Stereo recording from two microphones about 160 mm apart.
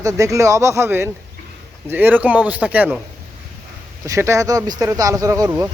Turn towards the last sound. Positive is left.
turn(degrees=-20)  # may be behind; listen again after turning